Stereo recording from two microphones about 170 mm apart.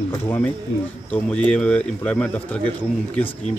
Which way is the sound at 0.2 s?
10° left (ahead or behind).